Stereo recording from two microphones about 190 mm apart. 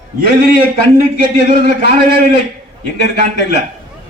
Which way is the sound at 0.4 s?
50° right (ahead or behind).